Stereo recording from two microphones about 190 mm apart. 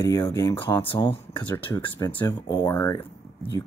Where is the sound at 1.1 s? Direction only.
25° left (ahead or behind).